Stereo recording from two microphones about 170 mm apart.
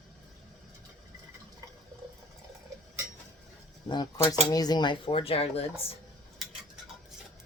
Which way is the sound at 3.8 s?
25° left (ahead or behind).